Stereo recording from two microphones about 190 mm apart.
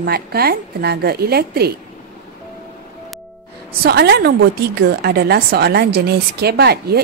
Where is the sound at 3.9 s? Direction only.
55° right (ahead or behind).